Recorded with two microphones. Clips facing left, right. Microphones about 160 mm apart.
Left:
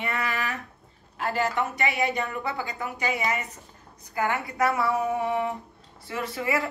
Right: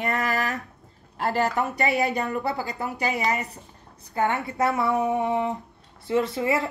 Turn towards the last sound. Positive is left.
turn(degrees=-25)  # may be behind; listen again after turning